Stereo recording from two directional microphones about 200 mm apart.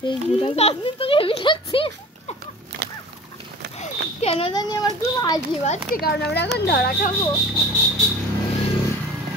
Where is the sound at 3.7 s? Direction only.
30° left (ahead or behind).